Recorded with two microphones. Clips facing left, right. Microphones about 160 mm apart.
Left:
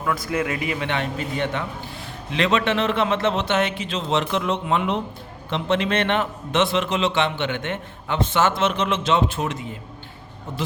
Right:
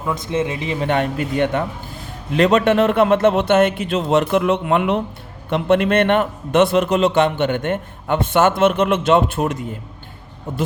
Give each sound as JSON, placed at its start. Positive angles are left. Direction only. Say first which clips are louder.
{"t": 0.0, "sound": "speech", "louder": "right 3 dB", "side_deg": -20}
{"t": 0.8, "sound": "a man's voice", "louder": "right 6 dB", "side_deg": -45}